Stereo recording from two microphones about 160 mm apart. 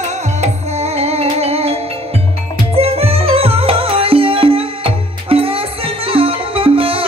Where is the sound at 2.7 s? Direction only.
35° right (ahead or behind).